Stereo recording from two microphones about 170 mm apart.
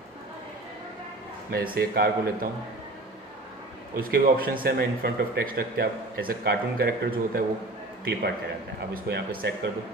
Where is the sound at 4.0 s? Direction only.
60° right (ahead or behind).